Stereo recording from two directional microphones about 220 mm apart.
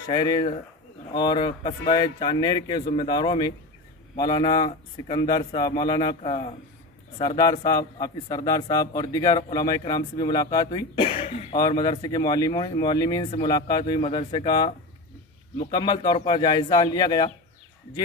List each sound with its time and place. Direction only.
0.0 s speech: 20° left (ahead or behind)
15.7 s speech: 20° left (ahead or behind)